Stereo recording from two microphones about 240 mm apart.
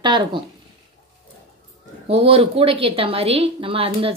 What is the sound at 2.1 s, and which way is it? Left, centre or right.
Speech, right.